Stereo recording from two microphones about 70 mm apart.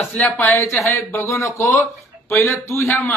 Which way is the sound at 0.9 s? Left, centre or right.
Left.